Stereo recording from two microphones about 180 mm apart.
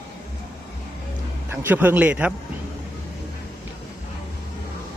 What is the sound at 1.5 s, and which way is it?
Speech, 10° right (ahead or behind).